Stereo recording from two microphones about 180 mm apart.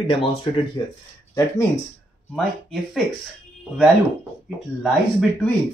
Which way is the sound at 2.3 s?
Centre (ahead or behind).